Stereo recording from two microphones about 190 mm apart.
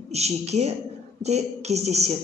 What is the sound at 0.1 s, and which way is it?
A man's voice, 35° right (ahead or behind).